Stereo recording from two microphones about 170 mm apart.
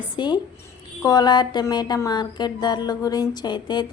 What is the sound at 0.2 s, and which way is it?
Speech, 25° left (ahead or behind).